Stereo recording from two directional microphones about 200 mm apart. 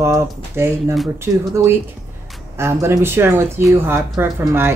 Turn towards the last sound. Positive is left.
turn(degrees=-10)  # may be behind; listen again after turning